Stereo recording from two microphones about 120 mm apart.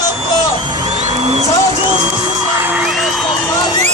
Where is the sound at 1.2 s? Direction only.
65° right (ahead or behind).